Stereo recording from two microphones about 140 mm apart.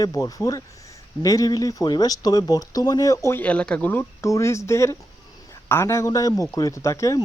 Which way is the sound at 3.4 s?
10° left (ahead or behind).